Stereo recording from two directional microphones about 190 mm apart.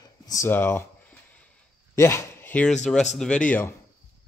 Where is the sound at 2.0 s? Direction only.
15° left (ahead or behind).